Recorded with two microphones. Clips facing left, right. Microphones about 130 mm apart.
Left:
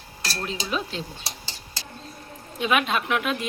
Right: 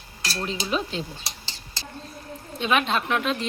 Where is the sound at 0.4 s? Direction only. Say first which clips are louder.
Right 2 dB; centre (ahead or behind).